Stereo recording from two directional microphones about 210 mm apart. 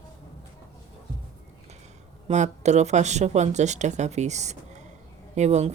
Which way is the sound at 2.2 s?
35° right (ahead or behind).